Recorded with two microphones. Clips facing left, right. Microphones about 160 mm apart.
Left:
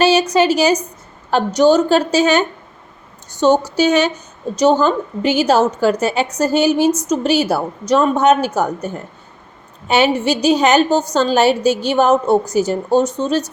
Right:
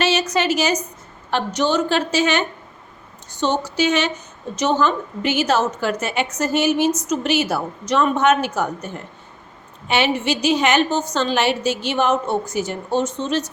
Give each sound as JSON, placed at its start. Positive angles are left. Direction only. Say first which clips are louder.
{"t": 0.0, "sound": "a woman's voice", "louder": "left 7 dB", "side_deg": 35}